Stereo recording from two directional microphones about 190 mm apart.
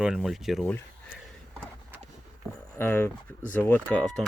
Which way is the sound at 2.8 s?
10° left (ahead or behind).